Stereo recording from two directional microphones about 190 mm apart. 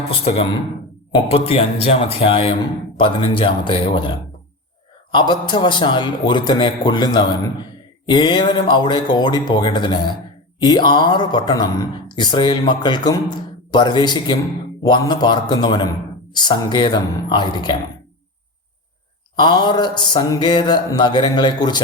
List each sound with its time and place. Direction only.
0.3 s speech: 35° left (ahead or behind)
5.1 s speech: 25° left (ahead or behind)
19.4 s speech: 25° left (ahead or behind)